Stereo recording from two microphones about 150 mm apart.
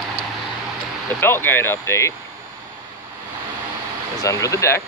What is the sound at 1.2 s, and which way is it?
Speech, 15° left (ahead or behind).